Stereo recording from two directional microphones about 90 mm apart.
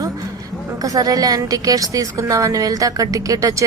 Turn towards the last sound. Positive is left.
turn(degrees=-40)  # may be behind; listen again after turning